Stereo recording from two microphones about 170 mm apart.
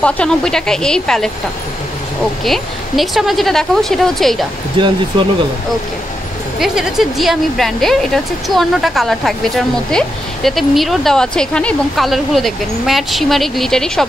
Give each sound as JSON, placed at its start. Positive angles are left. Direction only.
{"t": 0.0, "sound": "speech", "side_deg": 5}
{"t": 2.4, "sound": "speech", "side_deg": 0}
{"t": 4.8, "sound": "speech", "side_deg": -25}
{"t": 6.6, "sound": "speech", "side_deg": -5}